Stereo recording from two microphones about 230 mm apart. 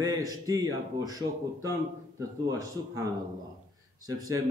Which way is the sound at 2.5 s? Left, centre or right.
Centre.